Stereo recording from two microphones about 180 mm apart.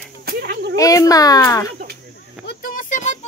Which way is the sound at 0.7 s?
20° left (ahead or behind).